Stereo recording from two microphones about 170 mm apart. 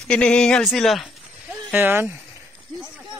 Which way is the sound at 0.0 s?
5° left (ahead or behind).